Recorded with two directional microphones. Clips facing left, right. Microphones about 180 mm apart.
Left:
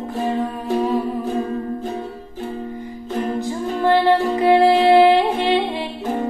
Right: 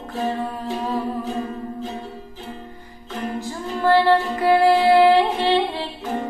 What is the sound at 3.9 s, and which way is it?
Music, 20° left (ahead or behind).